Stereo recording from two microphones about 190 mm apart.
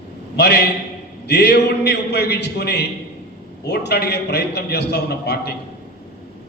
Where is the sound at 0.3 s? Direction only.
60° left (ahead or behind).